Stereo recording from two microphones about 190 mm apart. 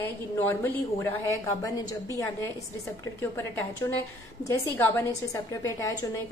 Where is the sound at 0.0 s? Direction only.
10° left (ahead or behind).